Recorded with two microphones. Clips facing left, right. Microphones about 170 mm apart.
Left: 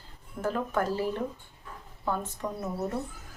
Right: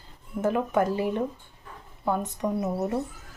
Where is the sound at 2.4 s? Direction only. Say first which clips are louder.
Right 8 dB; 20° right (ahead or behind).